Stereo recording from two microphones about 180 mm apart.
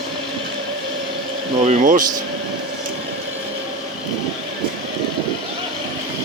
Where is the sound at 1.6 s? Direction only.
45° right (ahead or behind).